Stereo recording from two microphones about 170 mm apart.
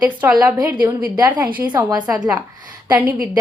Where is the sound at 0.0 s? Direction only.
5° right (ahead or behind).